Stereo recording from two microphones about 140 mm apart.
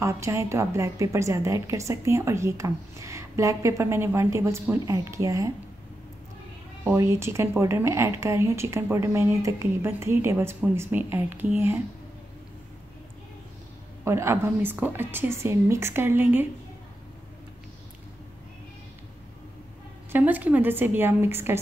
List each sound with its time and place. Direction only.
0.0 s a woman's voice: 20° right (ahead or behind)
7.0 s a woman's voice: 20° right (ahead or behind)
14.0 s a woman's voice: 20° right (ahead or behind)
20.1 s a woman's voice: 10° right (ahead or behind)